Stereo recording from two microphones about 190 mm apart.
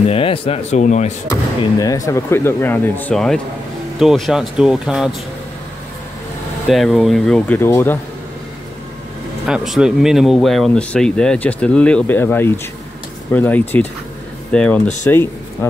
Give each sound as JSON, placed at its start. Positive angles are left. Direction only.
{"t": 0.1, "sound": "speech", "side_deg": 30}
{"t": 1.6, "sound": "speech", "side_deg": 20}
{"t": 6.7, "sound": "speech", "side_deg": 0}
{"t": 9.5, "sound": "speech", "side_deg": -5}